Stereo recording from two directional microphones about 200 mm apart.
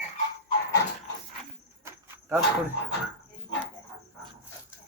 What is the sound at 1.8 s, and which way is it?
Cricket, 15° right (ahead or behind).